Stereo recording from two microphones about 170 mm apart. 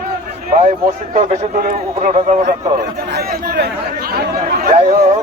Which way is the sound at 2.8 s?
75° right (ahead or behind).